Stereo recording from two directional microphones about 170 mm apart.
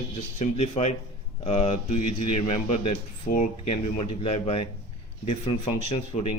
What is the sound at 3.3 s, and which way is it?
Speech, 55° left (ahead or behind).